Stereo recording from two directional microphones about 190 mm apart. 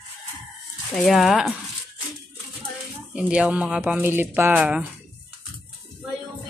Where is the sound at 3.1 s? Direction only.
5° right (ahead or behind).